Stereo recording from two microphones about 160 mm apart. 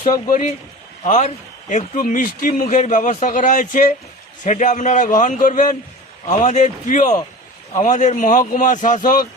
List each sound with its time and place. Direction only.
0.3 s speech: 55° left (ahead or behind)